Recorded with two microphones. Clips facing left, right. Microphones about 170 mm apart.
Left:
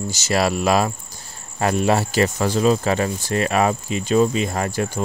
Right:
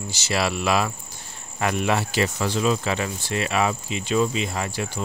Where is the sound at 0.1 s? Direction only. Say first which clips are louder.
Left 4 dB; 45° left (ahead or behind).